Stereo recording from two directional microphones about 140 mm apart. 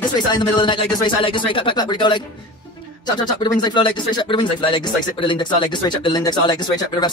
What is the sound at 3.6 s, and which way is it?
Speech, 35° left (ahead or behind).